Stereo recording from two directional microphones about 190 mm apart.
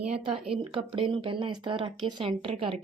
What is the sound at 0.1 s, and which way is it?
Speech, 5° right (ahead or behind).